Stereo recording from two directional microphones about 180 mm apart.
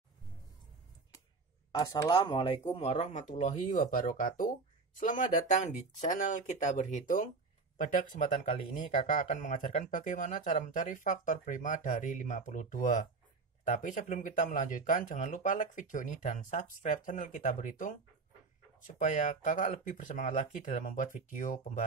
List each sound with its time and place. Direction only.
1.7 s speech: 20° left (ahead or behind); by 21.8 s 45° left (ahead or behind)